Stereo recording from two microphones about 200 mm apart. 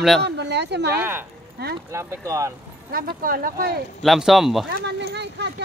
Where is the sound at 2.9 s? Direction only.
45° right (ahead or behind).